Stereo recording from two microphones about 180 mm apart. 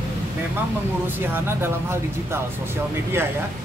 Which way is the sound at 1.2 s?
10° right (ahead or behind).